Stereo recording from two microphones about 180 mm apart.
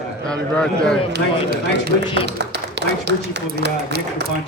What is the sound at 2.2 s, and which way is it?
A man's voice, 70° right (ahead or behind).